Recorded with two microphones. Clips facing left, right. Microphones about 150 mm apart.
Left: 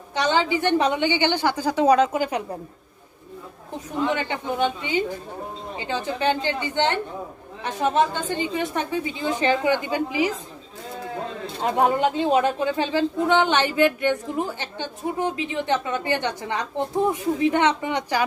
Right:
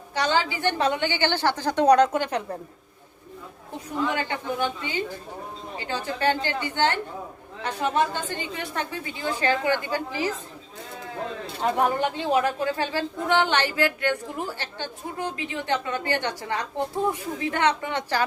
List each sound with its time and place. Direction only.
0.1 s a woman's voice: 20° left (ahead or behind)
4.0 s a woman's voice: 20° left (ahead or behind)
7.9 s a woman's voice: 20° left (ahead or behind)
11.6 s a woman's voice: 20° left (ahead or behind)